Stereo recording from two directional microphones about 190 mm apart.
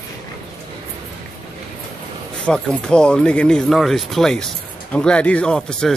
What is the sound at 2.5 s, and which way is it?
Speech, 5° left (ahead or behind).